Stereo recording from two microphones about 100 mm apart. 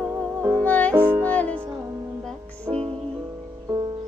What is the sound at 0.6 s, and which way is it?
Music, 15° left (ahead or behind).